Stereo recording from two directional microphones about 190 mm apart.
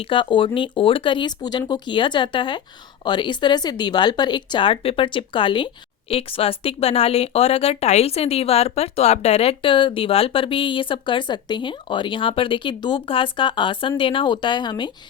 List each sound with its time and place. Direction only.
0.1 s speech: 25° left (ahead or behind)